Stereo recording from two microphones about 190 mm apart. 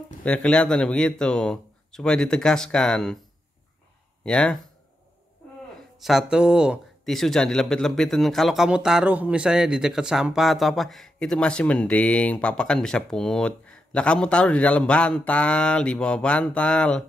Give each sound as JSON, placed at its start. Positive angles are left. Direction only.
{"t": 0.2, "sound": "speech", "side_deg": 5}
{"t": 4.2, "sound": "speech", "side_deg": 5}
{"t": 6.0, "sound": "speech", "side_deg": -5}